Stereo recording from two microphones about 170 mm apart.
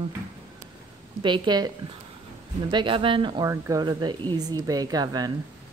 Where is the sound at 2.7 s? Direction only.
30° right (ahead or behind).